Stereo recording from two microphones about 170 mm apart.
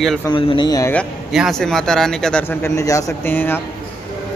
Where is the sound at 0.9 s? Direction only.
5° left (ahead or behind).